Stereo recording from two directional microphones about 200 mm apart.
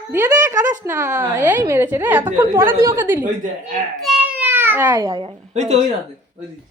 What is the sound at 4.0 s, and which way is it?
Baby cry, 5° right (ahead or behind).